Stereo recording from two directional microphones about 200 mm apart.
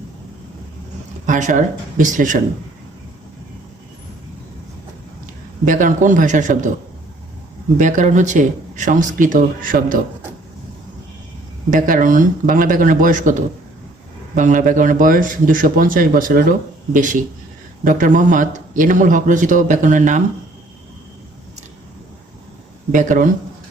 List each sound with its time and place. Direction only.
1.3 s speech: 40° right (ahead or behind)
5.2 s a man's voice: 40° right (ahead or behind)
7.8 s speech: 40° right (ahead or behind)
11.7 s speech: 40° right (ahead or behind)
14.3 s a man's voice: 40° right (ahead or behind)
22.9 s speech: 40° right (ahead or behind)